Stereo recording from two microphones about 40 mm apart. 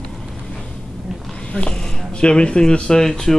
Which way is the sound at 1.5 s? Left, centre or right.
Left.